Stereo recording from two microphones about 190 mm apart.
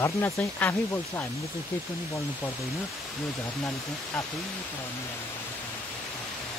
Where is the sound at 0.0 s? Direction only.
10° left (ahead or behind).